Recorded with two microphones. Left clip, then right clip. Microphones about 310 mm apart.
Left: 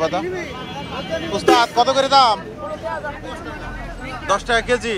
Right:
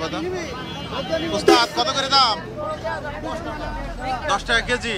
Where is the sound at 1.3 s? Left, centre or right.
Centre.